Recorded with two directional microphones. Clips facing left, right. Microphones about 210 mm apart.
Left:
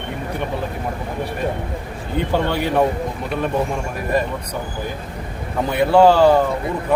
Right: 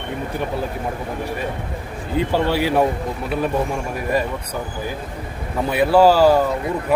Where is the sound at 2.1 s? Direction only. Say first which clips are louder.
Right 1 dB; 5° right (ahead or behind).